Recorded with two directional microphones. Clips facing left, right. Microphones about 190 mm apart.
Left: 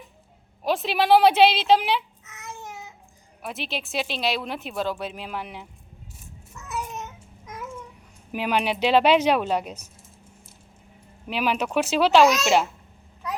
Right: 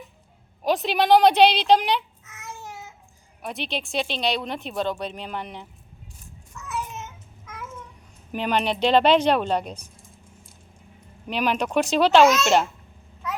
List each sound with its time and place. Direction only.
0.6 s a child's voice: centre (ahead or behind)
6.5 s a sound: 15° left (ahead or behind)
8.3 s a woman's voice: 5° left (ahead or behind)
11.3 s a woman's voice: 5° left (ahead or behind)